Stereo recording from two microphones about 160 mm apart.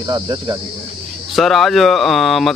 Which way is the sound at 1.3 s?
Centre (ahead or behind).